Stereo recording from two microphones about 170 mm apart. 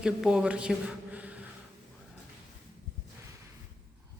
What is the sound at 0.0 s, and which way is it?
A man's voice, 5° right (ahead or behind).